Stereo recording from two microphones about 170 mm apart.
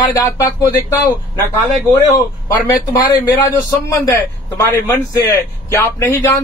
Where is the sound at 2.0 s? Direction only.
20° left (ahead or behind).